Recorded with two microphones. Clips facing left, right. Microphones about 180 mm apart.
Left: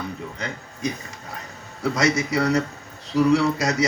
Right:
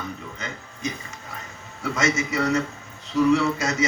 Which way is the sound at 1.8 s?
35° left (ahead or behind).